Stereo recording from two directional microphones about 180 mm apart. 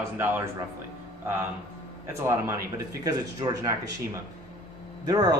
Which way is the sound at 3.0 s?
20° right (ahead or behind).